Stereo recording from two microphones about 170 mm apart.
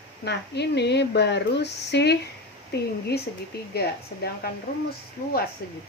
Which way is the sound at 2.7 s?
70° left (ahead or behind).